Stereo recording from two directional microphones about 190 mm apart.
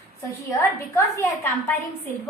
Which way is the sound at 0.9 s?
15° left (ahead or behind).